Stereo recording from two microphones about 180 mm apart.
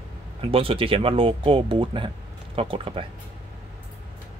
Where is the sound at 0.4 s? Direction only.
30° right (ahead or behind).